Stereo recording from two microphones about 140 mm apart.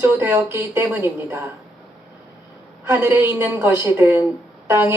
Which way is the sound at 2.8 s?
15° right (ahead or behind).